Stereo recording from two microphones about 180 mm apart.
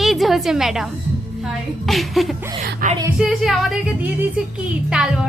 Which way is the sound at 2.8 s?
50° right (ahead or behind).